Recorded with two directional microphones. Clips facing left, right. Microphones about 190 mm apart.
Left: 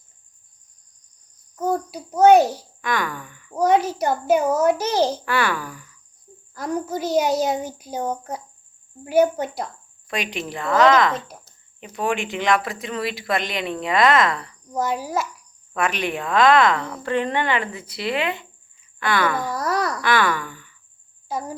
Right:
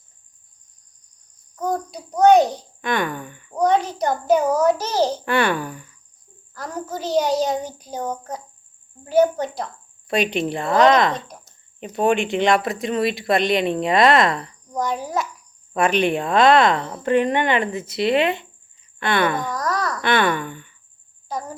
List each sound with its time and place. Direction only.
1.9 s a child's voice: 5° left (ahead or behind)
2.8 s speech: 25° right (ahead or behind)
3.6 s a child's voice: 10° left (ahead or behind)
5.2 s speech: 25° right (ahead or behind)
6.5 s a child's voice: 10° left (ahead or behind)
10.1 s speech: 30° right (ahead or behind)
14.7 s a child's voice: 5° left (ahead or behind)
15.7 s speech: 30° right (ahead or behind)
19.4 s a sound: 10° left (ahead or behind)
20.0 s speech: 25° right (ahead or behind)
21.2 s speech: 10° left (ahead or behind)